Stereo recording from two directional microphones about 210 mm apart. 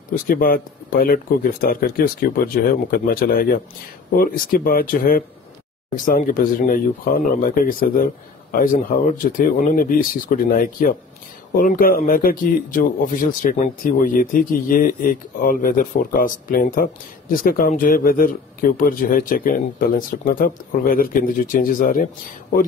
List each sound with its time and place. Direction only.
0.3 s a man's voice: 45° left (ahead or behind)